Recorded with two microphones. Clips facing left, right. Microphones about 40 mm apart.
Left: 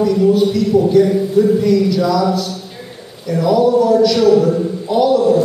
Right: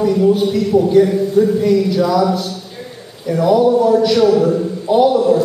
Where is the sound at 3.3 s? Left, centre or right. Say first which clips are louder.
Right 1 dB; centre.